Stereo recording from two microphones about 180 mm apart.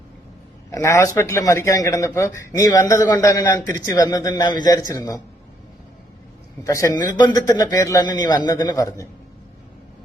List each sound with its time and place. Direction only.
0.7 s a man's voice: 15° left (ahead or behind)
6.7 s a man's voice: 15° left (ahead or behind)